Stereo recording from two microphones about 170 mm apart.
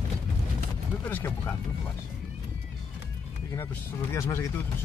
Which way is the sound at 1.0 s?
10° left (ahead or behind).